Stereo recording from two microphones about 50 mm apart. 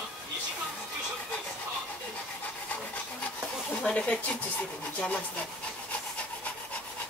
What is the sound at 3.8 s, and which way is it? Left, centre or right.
Speech, left.